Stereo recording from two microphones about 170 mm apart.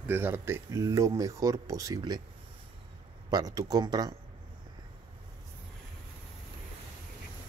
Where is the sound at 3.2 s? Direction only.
25° right (ahead or behind).